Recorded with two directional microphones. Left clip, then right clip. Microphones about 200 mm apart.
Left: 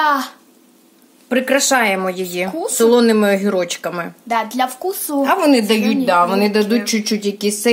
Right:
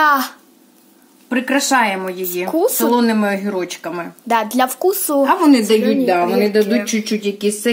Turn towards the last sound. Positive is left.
turn(degrees=25)  # may be behind; listen again after turning